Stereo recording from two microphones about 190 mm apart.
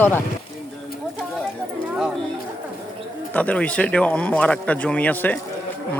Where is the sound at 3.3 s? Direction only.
5° left (ahead or behind).